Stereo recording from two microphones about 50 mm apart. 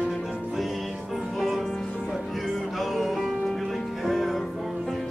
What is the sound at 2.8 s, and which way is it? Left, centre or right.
Music, centre.